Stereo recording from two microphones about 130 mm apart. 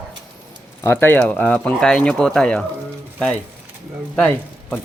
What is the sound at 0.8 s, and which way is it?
Speech, 15° left (ahead or behind).